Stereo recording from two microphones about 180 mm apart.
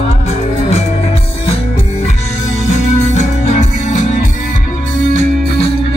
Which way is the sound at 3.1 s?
40° left (ahead or behind).